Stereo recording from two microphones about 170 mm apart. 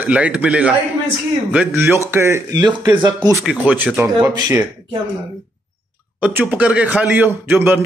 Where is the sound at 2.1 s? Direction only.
15° right (ahead or behind).